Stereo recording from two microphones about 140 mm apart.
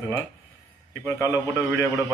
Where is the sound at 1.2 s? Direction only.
20° left (ahead or behind).